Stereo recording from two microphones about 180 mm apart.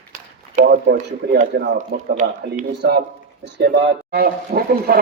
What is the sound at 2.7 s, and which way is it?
A man's voice, 70° right (ahead or behind).